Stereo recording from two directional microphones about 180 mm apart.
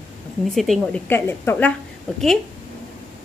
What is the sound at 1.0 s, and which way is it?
Speech, 10° left (ahead or behind).